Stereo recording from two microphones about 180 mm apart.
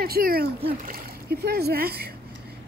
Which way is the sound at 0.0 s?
55° right (ahead or behind).